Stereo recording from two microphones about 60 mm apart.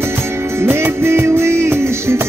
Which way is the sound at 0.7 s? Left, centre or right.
Right.